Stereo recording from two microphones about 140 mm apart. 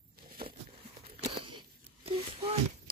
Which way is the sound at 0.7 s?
40° right (ahead or behind).